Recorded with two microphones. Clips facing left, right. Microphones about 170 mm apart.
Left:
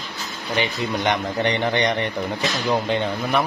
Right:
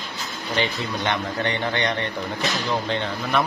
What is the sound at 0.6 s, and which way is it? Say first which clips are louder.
A man's voice: left 2 dB; 15° left (ahead or behind).